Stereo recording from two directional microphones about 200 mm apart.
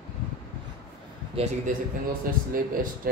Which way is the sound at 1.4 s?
30° right (ahead or behind).